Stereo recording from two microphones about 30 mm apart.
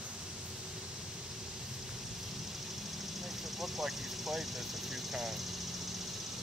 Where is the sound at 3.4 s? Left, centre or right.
Centre.